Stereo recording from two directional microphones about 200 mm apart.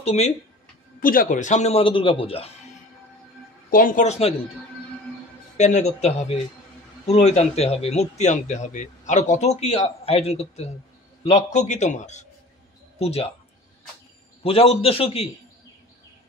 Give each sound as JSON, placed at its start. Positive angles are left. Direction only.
{"t": 0.0, "sound": "speech", "side_deg": 30}
{"t": 1.0, "sound": "a man's voice", "side_deg": 45}
{"t": 3.7, "sound": "a man's voice", "side_deg": 40}
{"t": 5.6, "sound": "a man's voice", "side_deg": 35}
{"t": 14.4, "sound": "a man's voice", "side_deg": 30}